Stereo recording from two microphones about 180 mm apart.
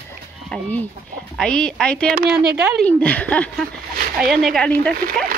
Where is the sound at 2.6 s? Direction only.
5° right (ahead or behind).